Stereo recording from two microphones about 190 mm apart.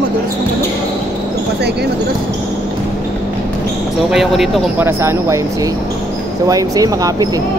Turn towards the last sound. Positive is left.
turn(degrees=-20)  # may be behind; listen again after turning